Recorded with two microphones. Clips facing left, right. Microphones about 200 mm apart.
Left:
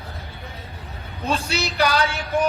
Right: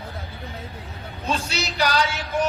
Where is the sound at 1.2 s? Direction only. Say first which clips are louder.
Left 2 dB; 55° left (ahead or behind).